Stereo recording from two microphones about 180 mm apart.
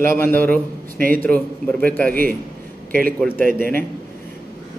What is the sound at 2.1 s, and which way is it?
Speech, 55° right (ahead or behind).